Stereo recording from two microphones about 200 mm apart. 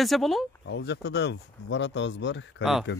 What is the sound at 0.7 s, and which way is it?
Speech, 60° left (ahead or behind).